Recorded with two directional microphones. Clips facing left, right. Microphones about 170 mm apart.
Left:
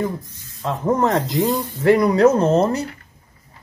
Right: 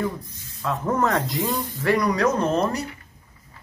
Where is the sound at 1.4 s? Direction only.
40° left (ahead or behind).